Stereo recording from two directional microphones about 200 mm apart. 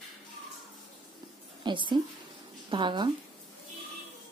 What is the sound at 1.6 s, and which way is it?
A woman's voice, 25° right (ahead or behind).